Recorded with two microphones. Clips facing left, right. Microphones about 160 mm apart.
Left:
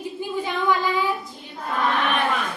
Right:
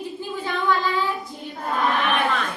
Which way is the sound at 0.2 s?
15° left (ahead or behind).